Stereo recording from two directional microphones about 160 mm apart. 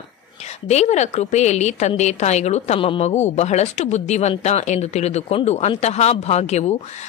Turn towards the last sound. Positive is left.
turn(degrees=45)  # may be behind; listen again after turning